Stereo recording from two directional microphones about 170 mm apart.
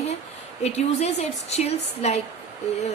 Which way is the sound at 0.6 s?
40° left (ahead or behind).